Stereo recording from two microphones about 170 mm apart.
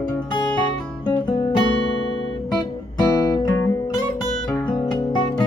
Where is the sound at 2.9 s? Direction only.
25° left (ahead or behind).